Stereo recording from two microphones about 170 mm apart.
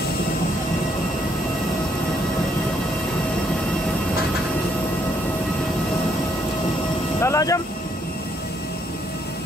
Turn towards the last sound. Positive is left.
turn(degrees=20)  # may be behind; listen again after turning